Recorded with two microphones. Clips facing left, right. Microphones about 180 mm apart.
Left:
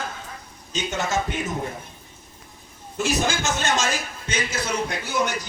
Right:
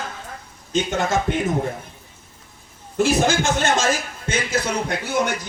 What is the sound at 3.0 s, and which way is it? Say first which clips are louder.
Speech: right 6 dB; 55° right (ahead or behind).